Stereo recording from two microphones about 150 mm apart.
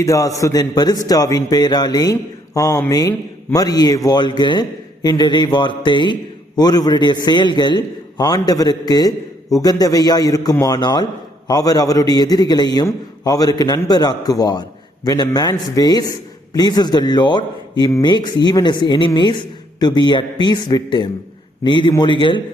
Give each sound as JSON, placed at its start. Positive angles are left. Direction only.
{"t": 0.0, "sound": "a man's voice", "side_deg": 20}